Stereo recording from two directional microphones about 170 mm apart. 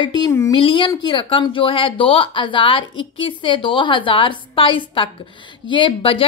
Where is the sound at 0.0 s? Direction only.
25° left (ahead or behind).